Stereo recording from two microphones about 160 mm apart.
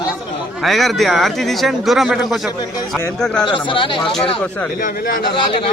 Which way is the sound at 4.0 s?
5° left (ahead or behind).